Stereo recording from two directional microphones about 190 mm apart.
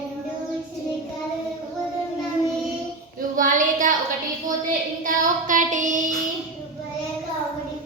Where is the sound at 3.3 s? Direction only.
45° right (ahead or behind).